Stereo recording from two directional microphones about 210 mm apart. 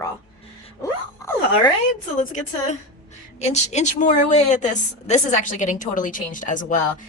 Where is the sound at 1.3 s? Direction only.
10° left (ahead or behind).